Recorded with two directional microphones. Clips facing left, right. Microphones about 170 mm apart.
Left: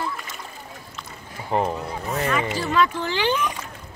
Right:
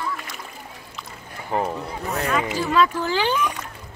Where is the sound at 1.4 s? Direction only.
5° left (ahead or behind).